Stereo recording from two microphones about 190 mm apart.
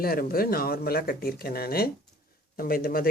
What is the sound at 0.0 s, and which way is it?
Speech, 50° left (ahead or behind).